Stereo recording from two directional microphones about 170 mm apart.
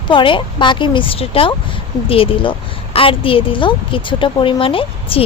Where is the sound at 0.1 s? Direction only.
30° left (ahead or behind).